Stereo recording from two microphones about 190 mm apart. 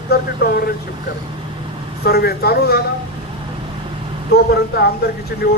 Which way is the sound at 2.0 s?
55° left (ahead or behind).